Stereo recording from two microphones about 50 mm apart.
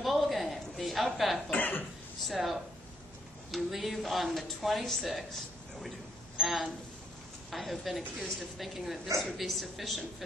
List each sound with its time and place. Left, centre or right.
0.0 s a sound: centre
1.5 s speech: left
2.2 s speech: centre